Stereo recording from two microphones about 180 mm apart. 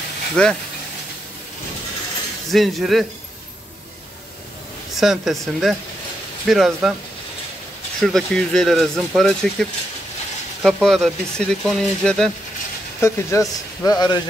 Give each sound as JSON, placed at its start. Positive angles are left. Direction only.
{"t": 0.4, "sound": "speech", "side_deg": 5}
{"t": 2.5, "sound": "speech", "side_deg": 0}
{"t": 5.0, "sound": "speech", "side_deg": 0}
{"t": 8.0, "sound": "speech", "side_deg": 5}
{"t": 13.0, "sound": "a man's voice", "side_deg": 15}